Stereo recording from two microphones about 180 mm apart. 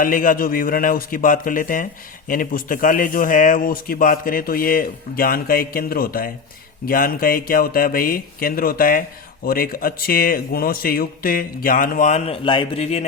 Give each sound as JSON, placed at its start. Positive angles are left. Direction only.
{"t": 0.0, "sound": "a man's voice", "side_deg": 50}